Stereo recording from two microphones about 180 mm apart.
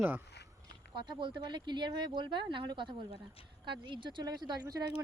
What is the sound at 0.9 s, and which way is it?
Speech, 25° right (ahead or behind).